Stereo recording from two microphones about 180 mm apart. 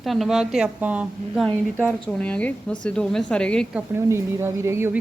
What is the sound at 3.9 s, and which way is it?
Speech, 15° right (ahead or behind).